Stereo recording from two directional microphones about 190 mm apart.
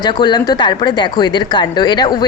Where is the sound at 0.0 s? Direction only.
20° left (ahead or behind).